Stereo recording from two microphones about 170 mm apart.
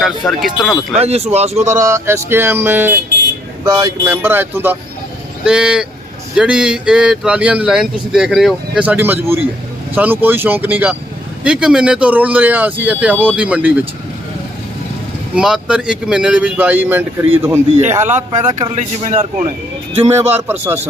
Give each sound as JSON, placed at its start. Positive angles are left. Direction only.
{"t": 0.3, "sound": "a man's voice", "side_deg": 0}
{"t": 0.9, "sound": "speech", "side_deg": -40}
{"t": 1.8, "sound": "speech", "side_deg": -15}
{"t": 4.0, "sound": "a man's voice", "side_deg": -10}
{"t": 15.4, "sound": "speech", "side_deg": -5}
{"t": 17.7, "sound": "a man's voice", "side_deg": -45}
{"t": 18.3, "sound": "speech", "side_deg": -30}
{"t": 20.3, "sound": "speech", "side_deg": -10}